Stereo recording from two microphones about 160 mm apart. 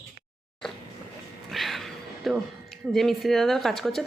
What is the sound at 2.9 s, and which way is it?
Speech, centre (ahead or behind).